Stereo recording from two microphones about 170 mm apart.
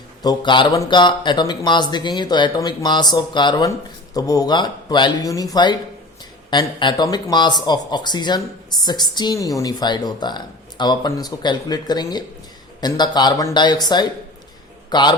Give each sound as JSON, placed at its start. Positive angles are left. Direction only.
{"t": 0.2, "sound": "a man's voice", "side_deg": 25}